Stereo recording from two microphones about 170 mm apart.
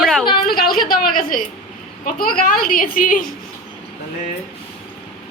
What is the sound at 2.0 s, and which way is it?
A woman's voice, 55° left (ahead or behind).